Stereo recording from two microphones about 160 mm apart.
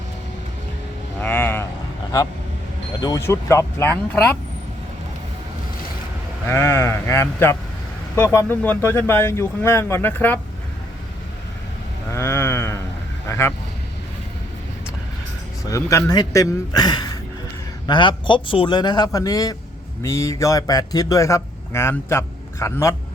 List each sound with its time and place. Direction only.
1.2 s a sound: 10° left (ahead or behind)
3.0 s speech: 20° left (ahead or behind)
6.5 s speech: 15° left (ahead or behind)
12.1 s a sound: 15° left (ahead or behind)
13.2 s vehicle: 15° left (ahead or behind)
15.7 s speech: 20° left (ahead or behind)